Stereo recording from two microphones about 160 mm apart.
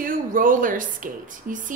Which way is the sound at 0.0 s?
60° right (ahead or behind).